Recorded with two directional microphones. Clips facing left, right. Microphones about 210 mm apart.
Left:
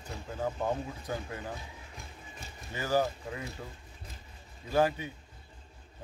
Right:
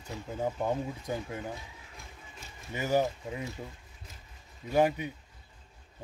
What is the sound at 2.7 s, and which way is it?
Speech, 20° right (ahead or behind).